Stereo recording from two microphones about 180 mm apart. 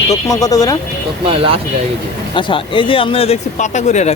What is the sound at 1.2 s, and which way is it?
Speech, 30° right (ahead or behind).